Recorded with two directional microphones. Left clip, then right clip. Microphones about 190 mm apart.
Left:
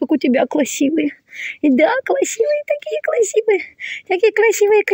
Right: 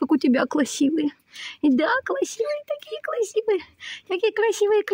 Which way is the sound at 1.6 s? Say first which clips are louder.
Left 7 dB; 10° left (ahead or behind).